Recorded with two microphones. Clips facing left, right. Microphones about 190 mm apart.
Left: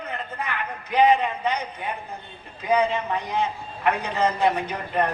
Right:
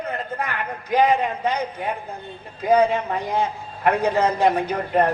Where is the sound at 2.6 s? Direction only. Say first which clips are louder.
Right 4 dB; 40° right (ahead or behind).